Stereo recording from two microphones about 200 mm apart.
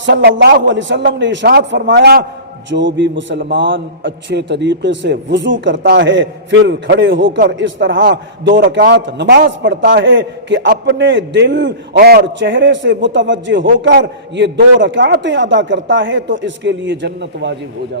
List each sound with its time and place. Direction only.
0.0 s a man's voice: 65° right (ahead or behind)
11.9 s a man's voice: 50° right (ahead or behind)